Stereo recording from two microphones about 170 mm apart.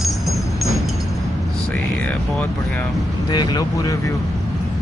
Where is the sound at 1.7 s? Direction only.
10° left (ahead or behind).